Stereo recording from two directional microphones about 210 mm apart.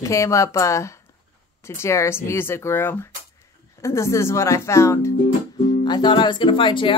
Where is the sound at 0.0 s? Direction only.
15° left (ahead or behind).